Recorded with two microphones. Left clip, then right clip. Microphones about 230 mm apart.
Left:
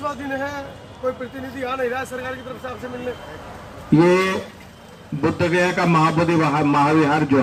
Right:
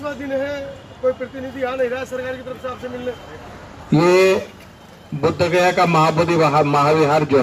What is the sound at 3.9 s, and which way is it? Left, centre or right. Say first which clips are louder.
A man's voice: right 3 dB; right.